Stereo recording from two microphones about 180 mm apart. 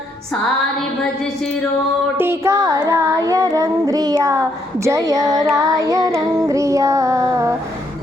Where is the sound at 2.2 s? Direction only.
15° right (ahead or behind).